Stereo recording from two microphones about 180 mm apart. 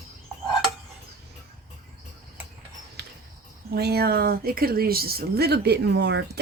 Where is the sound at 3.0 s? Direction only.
65° right (ahead or behind).